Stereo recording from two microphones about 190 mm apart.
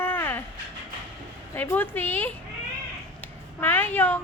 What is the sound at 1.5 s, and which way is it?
A woman's voice, 10° left (ahead or behind).